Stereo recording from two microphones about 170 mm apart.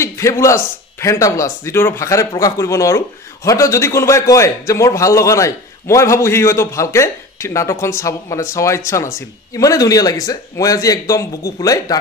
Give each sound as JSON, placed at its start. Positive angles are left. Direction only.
{"t": 0.0, "sound": "a man's voice", "side_deg": 15}